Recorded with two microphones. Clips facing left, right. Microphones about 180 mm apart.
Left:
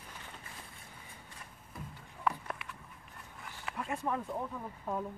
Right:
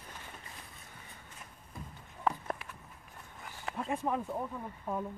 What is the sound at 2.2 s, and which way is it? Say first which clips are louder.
Horse: right 2 dB; 35° right (ahead or behind).